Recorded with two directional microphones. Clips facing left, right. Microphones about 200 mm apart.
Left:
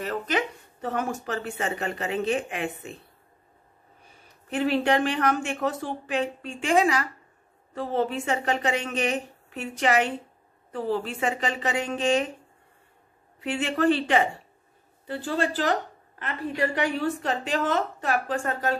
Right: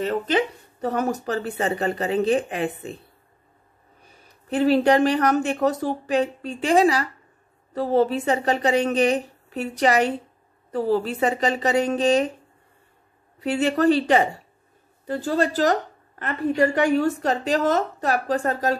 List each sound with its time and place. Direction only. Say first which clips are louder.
0.0 s speech: right 5 dB; 30° right (ahead or behind)
4.5 s speech: right 6 dB; 35° right (ahead or behind)
13.4 s speech: right 5 dB; 40° right (ahead or behind)